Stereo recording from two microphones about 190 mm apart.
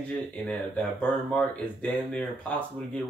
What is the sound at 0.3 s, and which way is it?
Speech, 5° left (ahead or behind).